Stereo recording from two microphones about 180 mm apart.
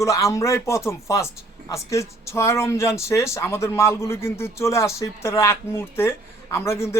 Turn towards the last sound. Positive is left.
turn(degrees=15)  # may be behind; listen again after turning